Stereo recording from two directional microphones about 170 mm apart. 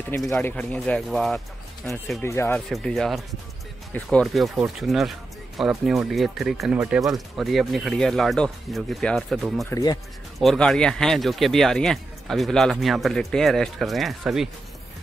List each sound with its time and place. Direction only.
0.1 s speech: 15° left (ahead or behind)
2.2 s speech: 15° left (ahead or behind)
2.7 s speech: centre (ahead or behind)
9.7 s speech: 20° left (ahead or behind)
10.4 s speech: centre (ahead or behind)